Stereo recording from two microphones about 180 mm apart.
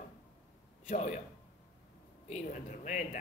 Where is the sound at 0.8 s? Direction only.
40° left (ahead or behind).